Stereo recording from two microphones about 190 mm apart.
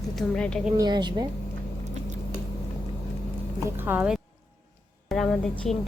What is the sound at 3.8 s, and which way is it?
Speech, 5° right (ahead or behind).